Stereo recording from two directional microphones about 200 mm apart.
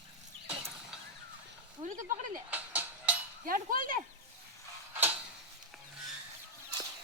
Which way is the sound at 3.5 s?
45° right (ahead or behind).